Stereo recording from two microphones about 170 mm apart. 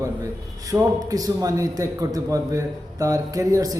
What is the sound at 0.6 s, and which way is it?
A man's voice, 20° right (ahead or behind).